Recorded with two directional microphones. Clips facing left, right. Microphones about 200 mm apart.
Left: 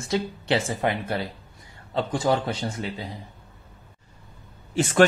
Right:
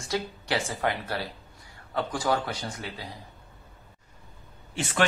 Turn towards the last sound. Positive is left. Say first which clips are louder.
# left 8 dB
turn(degrees=45)  # may be behind; listen again after turning